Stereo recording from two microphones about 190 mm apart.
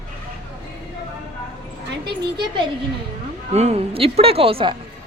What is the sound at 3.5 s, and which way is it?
Speech, 35° right (ahead or behind).